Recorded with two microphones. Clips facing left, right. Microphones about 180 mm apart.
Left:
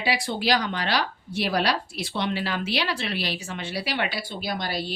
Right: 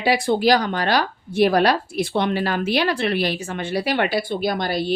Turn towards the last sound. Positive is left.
turn(degrees=-50)  # may be behind; listen again after turning